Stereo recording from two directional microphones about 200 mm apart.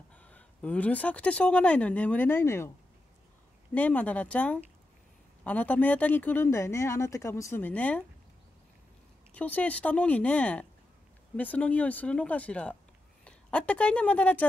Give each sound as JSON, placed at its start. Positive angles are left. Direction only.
{"t": 0.1, "sound": "speech", "side_deg": 5}
{"t": 3.7, "sound": "speech", "side_deg": 5}
{"t": 9.3, "sound": "a woman's voice", "side_deg": 5}